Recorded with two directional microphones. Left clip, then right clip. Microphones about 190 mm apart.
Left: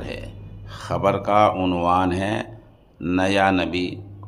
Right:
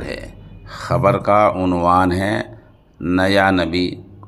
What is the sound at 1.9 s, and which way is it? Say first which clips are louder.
A man's voice: right 6 dB; 25° right (ahead or behind).